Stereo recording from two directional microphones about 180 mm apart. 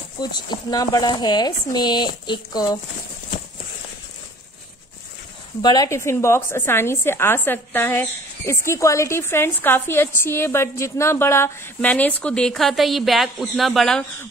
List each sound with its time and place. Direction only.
0.2 s speech: 25° left (ahead or behind)
5.6 s a woman's voice: 20° left (ahead or behind); by 14.0 s centre (ahead or behind)